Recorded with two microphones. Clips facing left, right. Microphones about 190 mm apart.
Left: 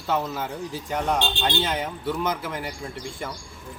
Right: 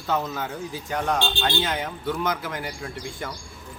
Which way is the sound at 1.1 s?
20° left (ahead or behind).